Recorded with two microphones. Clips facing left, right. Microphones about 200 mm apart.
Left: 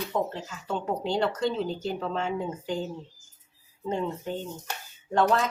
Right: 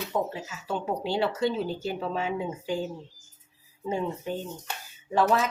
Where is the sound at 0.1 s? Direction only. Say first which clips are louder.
Even; 5° right (ahead or behind).